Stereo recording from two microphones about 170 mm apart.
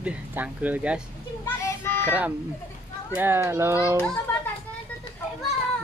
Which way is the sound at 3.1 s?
15° right (ahead or behind).